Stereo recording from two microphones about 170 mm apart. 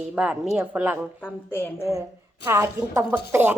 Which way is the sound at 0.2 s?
10° right (ahead or behind).